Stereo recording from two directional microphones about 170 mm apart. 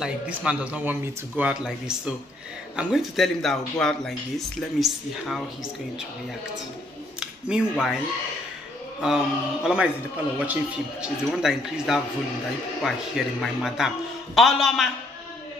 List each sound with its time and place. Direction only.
0.0 s a man's voice: 5° right (ahead or behind)
7.2 s speech: 5° right (ahead or behind)
9.0 s a man's voice: 5° right (ahead or behind)